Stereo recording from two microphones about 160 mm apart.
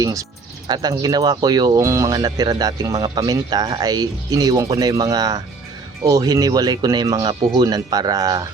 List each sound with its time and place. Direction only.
0.0 s speech: 20° right (ahead or behind)